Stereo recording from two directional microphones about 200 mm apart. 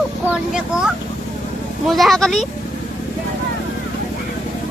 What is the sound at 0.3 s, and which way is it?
A child's voice, 5° right (ahead or behind).